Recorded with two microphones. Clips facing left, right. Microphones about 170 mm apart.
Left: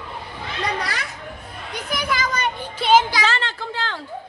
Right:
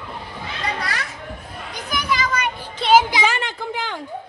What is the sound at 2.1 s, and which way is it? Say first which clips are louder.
Children playing: right 3 dB; 50° left (ahead or behind).